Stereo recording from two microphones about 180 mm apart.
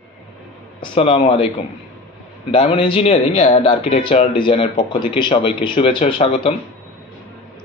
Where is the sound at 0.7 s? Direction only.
30° left (ahead or behind).